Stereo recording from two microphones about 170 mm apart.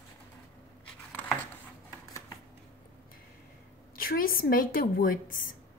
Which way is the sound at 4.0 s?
55° left (ahead or behind).